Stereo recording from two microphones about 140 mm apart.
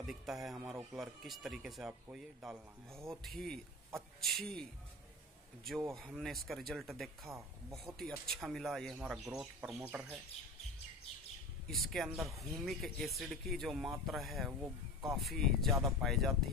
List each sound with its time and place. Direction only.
0.0 s a man's voice: 5° right (ahead or behind)
5.9 s a man's voice: centre (ahead or behind)
7.3 s speech: 15° right (ahead or behind)
7.7 s a man's voice: centre (ahead or behind)
11.6 s a man's voice: centre (ahead or behind)
14.6 s speech: 20° right (ahead or behind)
15.1 s a man's voice: centre (ahead or behind)